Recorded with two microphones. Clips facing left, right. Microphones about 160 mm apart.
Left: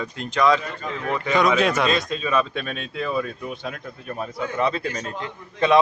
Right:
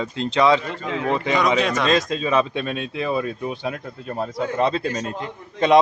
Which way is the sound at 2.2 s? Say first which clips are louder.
Right 3 dB; 25° right (ahead or behind).